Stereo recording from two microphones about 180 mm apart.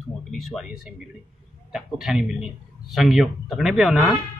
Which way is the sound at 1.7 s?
Centre (ahead or behind).